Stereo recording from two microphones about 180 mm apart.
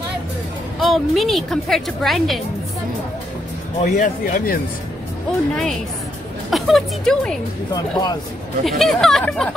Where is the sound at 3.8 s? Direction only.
45° left (ahead or behind).